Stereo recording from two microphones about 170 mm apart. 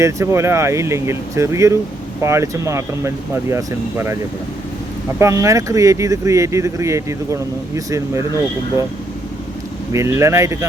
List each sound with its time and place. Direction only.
0.0 s speech: 15° right (ahead or behind)
5.2 s speech: 20° right (ahead or behind)
9.9 s speech: 15° right (ahead or behind)